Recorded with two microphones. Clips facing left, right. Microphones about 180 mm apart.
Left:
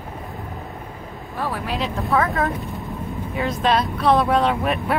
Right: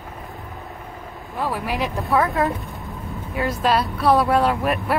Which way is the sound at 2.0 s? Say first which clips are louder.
Right 1 dB; centre (ahead or behind).